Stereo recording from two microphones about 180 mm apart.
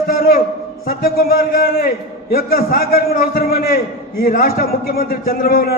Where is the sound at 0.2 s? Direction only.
55° left (ahead or behind).